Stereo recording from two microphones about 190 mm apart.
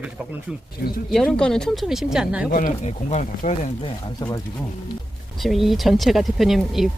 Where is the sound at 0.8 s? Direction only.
55° left (ahead or behind).